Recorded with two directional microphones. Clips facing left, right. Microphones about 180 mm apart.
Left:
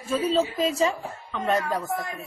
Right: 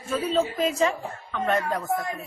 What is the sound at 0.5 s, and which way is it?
Speech, 30° left (ahead or behind).